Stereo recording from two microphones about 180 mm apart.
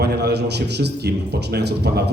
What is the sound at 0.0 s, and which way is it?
A man's voice, 65° right (ahead or behind).